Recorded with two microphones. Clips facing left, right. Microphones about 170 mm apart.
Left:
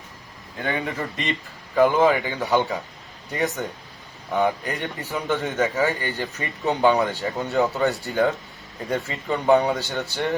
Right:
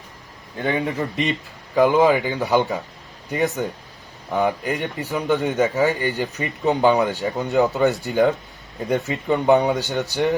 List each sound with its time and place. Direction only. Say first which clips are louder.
0.9 s speech: right 5 dB; 10° right (ahead or behind)